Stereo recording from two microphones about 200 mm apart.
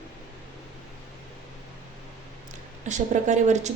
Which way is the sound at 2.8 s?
35° right (ahead or behind).